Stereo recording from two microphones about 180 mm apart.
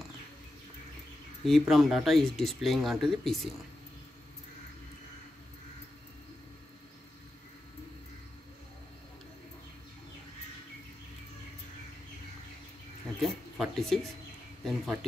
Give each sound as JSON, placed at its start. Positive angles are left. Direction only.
{"t": 1.4, "sound": "speech", "side_deg": 0}
{"t": 13.2, "sound": "a sound", "side_deg": 0}
{"t": 14.6, "sound": "speech", "side_deg": 0}